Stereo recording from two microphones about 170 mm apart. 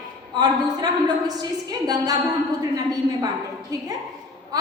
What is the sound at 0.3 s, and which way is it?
A woman's voice, 25° right (ahead or behind).